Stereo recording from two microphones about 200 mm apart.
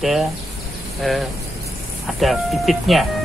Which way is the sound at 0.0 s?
Centre (ahead or behind).